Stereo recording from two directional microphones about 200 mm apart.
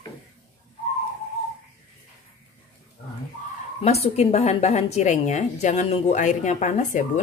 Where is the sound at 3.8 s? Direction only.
30° left (ahead or behind).